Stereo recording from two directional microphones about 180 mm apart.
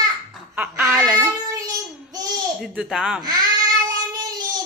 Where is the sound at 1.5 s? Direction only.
20° right (ahead or behind).